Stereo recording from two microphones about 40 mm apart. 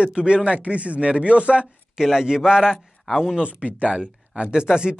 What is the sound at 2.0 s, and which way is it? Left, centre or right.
Speech, centre.